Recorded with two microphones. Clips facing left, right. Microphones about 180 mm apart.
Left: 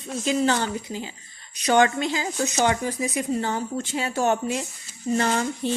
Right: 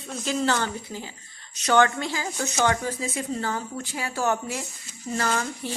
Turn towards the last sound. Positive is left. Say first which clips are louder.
# left 4 dB
turn(degrees=25)  # may be behind; listen again after turning